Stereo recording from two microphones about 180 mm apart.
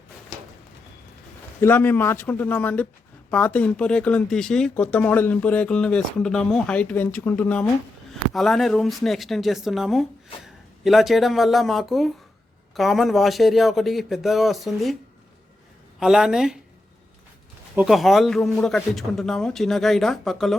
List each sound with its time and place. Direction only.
1.6 s speech: 10° left (ahead or behind)
16.0 s speech: 5° right (ahead or behind)
17.7 s speech: centre (ahead or behind)